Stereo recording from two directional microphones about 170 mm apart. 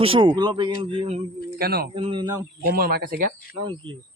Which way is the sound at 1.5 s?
60° right (ahead or behind).